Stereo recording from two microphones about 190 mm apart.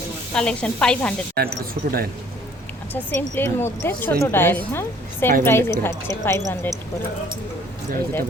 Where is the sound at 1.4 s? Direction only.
55° right (ahead or behind).